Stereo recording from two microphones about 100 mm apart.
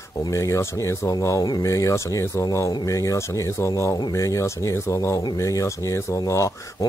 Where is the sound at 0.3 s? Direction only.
30° left (ahead or behind).